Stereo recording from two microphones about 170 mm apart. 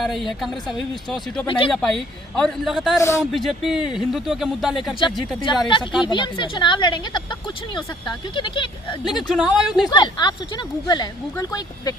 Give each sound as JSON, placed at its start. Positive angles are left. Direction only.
{"t": 0.0, "sound": "speech", "side_deg": 0}
{"t": 1.5, "sound": "speech", "side_deg": 30}
{"t": 1.7, "sound": "speech", "side_deg": 5}
{"t": 3.0, "sound": "a man's voice", "side_deg": 15}
{"t": 3.3, "sound": "speech", "side_deg": 0}
{"t": 5.0, "sound": "speech", "side_deg": 30}
{"t": 5.8, "sound": "speech", "side_deg": -5}
{"t": 6.1, "sound": "speech", "side_deg": 25}
{"t": 9.3, "sound": "speech", "side_deg": -5}
{"t": 9.9, "sound": "speech", "side_deg": 25}